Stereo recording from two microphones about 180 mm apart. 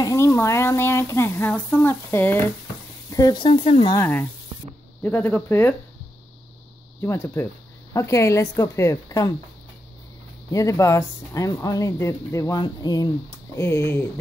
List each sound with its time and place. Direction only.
0.0 s speech: 15° left (ahead or behind)
3.9 s a woman's voice: 15° left (ahead or behind)
7.0 s a woman's voice: 15° left (ahead or behind)
10.5 s a woman's voice: 20° left (ahead or behind)